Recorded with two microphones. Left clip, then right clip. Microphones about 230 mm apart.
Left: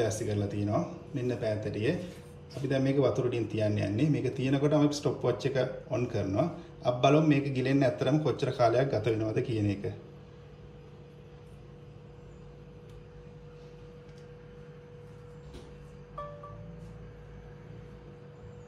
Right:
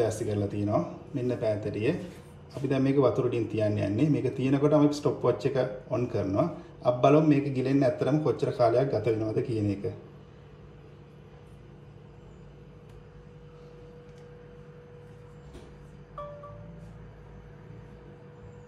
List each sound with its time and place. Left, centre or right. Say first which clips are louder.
0.0 s speech: right 3 dB; centre
8.0 s a man's voice: right 2 dB; left
8.4 s speech: right 2 dB; centre
9.1 s a man's voice: right 2 dB; left